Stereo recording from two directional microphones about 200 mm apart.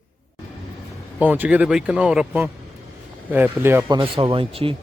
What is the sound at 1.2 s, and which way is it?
Speech, 10° right (ahead or behind).